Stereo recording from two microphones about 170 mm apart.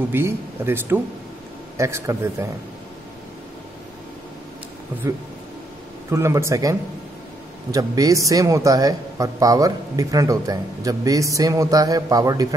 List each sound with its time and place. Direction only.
0.1 s speech: 15° right (ahead or behind)
6.0 s a man's voice: 15° right (ahead or behind)